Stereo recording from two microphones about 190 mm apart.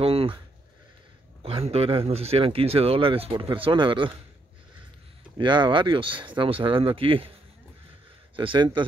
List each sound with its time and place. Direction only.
0.0 s a sound: 30° right (ahead or behind)
1.4 s speech: 30° right (ahead or behind)
5.4 s speech: 25° right (ahead or behind)
8.4 s speech: 25° right (ahead or behind)